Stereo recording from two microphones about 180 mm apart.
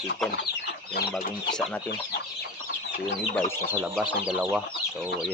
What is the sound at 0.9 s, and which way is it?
Speech, 65° left (ahead or behind).